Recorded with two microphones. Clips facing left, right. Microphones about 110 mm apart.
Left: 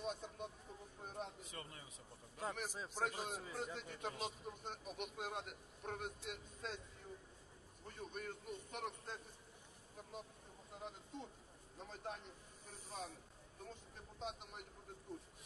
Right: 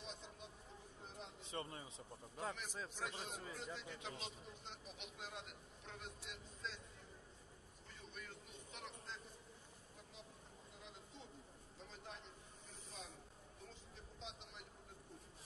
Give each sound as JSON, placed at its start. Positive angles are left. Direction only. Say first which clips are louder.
{"t": 0.0, "sound": "vehicle", "louder": "left 9 dB", "side_deg": 50}
{"t": 1.0, "sound": "a sound", "louder": "left 7 dB", "side_deg": 50}
{"t": 1.4, "sound": "a man's voice", "louder": "right 5 dB", "side_deg": -30}
{"t": 2.9, "sound": "a man's voice", "louder": "left 9 dB", "side_deg": 45}
{"t": 7.8, "sound": "a sound", "louder": "left 8 dB", "side_deg": 50}
{"t": 10.1, "sound": "speech", "louder": "left 9 dB", "side_deg": 50}
{"t": 10.8, "sound": "vehicle", "louder": "left 9 dB", "side_deg": 50}
{"t": 11.8, "sound": "a man's voice", "louder": "left 7 dB", "side_deg": 50}
{"t": 13.7, "sound": "vehicle", "louder": "left 5 dB", "side_deg": 50}